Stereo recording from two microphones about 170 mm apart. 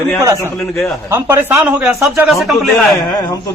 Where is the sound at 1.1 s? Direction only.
15° right (ahead or behind).